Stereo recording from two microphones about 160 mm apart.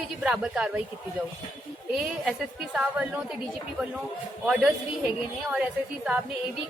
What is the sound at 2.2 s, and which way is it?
Speech, 5° right (ahead or behind).